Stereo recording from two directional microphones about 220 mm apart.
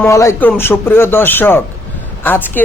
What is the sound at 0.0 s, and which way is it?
Speech, 15° left (ahead or behind).